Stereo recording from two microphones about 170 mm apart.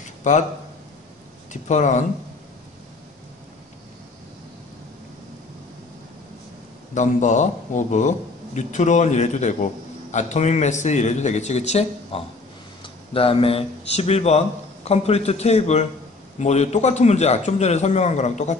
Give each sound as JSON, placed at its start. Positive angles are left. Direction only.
{"t": 0.2, "sound": "speech", "side_deg": 45}
{"t": 1.5, "sound": "speech", "side_deg": 45}
{"t": 6.9, "sound": "a man's voice", "side_deg": 45}